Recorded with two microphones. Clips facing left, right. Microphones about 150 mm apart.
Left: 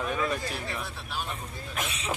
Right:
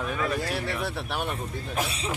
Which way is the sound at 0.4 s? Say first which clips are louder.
Right 5 dB; 70° right (ahead or behind).